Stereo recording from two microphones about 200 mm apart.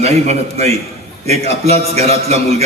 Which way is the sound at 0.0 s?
30° right (ahead or behind).